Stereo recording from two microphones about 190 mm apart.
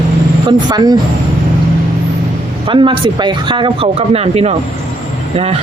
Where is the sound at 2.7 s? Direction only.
25° right (ahead or behind).